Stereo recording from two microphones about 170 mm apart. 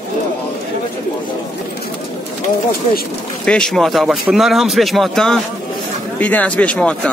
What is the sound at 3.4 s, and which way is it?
A man's voice, 5° left (ahead or behind).